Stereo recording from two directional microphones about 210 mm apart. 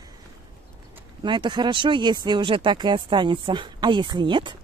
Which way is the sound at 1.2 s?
20° right (ahead or behind).